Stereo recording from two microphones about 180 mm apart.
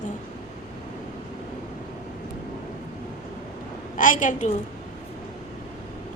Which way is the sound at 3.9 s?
45° left (ahead or behind).